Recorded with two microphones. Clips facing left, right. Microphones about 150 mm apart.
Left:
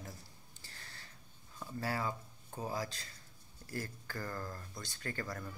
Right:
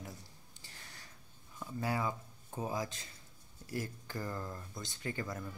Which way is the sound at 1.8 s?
20° right (ahead or behind).